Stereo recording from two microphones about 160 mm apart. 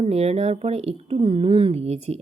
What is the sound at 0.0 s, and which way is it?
Speech, 40° right (ahead or behind).